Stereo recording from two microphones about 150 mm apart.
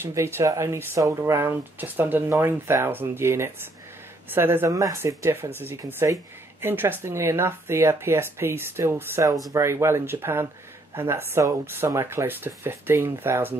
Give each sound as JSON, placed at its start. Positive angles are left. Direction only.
{"t": 0.0, "sound": "speech", "side_deg": -15}